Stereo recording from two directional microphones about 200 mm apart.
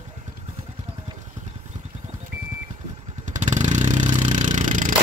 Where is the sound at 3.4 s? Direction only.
35° right (ahead or behind).